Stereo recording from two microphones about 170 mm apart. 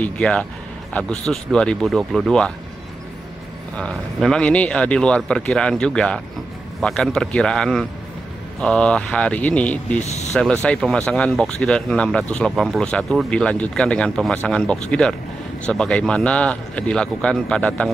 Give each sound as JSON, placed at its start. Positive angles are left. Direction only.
{"t": 0.0, "sound": "speech", "side_deg": 5}
{"t": 3.7, "sound": "speech", "side_deg": 5}
{"t": 10.0, "sound": "speech", "side_deg": 40}
{"t": 10.3, "sound": "speech", "side_deg": 5}